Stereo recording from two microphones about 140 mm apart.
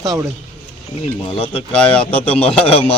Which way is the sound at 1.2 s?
40° left (ahead or behind).